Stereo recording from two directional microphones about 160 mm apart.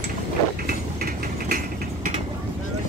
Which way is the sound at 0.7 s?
70° right (ahead or behind).